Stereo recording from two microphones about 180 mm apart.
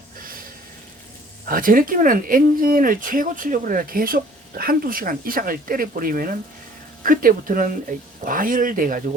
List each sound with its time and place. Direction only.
1.5 s speech: 50° right (ahead or behind)